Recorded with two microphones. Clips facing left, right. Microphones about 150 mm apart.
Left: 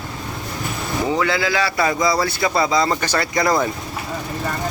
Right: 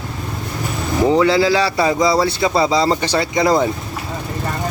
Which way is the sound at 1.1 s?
30° right (ahead or behind).